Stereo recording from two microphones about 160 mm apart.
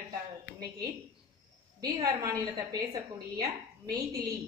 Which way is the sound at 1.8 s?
20° right (ahead or behind).